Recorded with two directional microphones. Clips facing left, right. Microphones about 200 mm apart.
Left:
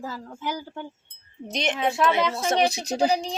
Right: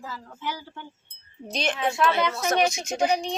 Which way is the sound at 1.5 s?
20° left (ahead or behind).